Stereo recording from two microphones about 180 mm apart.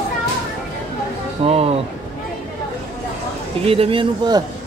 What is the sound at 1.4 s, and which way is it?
Speech, 35° right (ahead or behind).